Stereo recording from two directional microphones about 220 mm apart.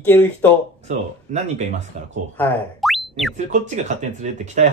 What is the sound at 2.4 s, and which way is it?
Boing, 5° left (ahead or behind).